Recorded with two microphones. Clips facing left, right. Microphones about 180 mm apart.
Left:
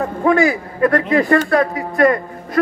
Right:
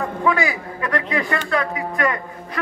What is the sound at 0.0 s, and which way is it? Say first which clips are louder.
A man's voice: left 6 dB; 40° left (ahead or behind).